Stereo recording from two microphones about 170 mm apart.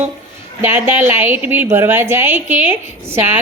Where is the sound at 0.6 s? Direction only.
15° right (ahead or behind).